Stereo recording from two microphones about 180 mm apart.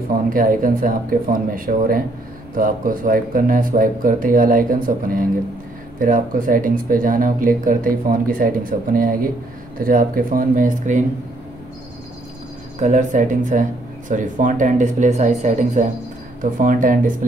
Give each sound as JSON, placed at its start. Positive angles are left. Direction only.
{"t": 0.1, "sound": "speech", "side_deg": -50}
{"t": 12.7, "sound": "speech", "side_deg": -45}